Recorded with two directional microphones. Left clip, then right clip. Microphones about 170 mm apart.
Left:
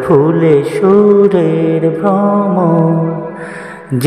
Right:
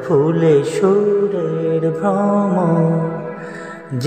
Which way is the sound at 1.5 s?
25° left (ahead or behind).